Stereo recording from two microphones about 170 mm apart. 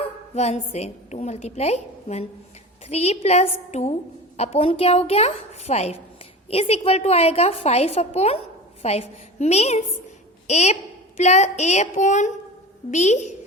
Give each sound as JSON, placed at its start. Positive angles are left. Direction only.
{"t": 0.3, "sound": "a woman's voice", "side_deg": 40}